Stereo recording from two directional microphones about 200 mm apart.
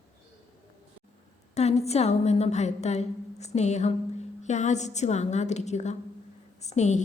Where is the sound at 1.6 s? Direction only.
30° left (ahead or behind).